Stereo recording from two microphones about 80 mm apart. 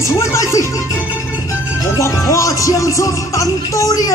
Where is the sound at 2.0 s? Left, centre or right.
Left.